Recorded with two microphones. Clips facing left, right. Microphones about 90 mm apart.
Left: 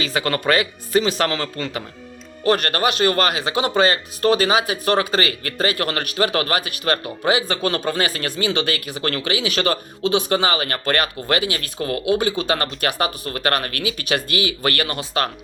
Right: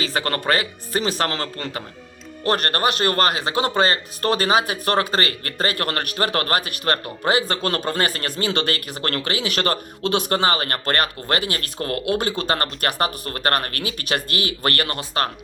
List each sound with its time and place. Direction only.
0.1 s speech: 40° right (ahead or behind)
2.5 s speech: 40° right (ahead or behind)